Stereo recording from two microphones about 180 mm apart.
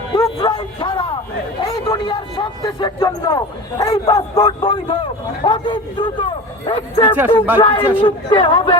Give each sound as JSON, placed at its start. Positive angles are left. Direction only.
{"t": 0.1, "sound": "a man's voice", "side_deg": 20}